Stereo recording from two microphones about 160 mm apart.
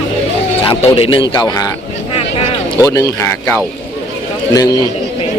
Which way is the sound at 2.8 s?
20° left (ahead or behind).